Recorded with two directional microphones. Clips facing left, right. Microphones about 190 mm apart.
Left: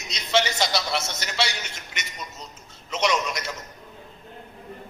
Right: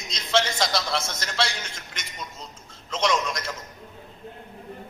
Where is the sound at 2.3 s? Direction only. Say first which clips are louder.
Even; 30° right (ahead or behind).